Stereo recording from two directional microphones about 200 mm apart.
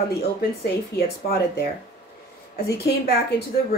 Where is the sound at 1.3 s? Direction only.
50° left (ahead or behind).